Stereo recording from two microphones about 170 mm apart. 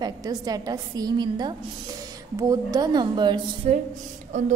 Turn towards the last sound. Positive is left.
turn(degrees=-45)  # may be behind; listen again after turning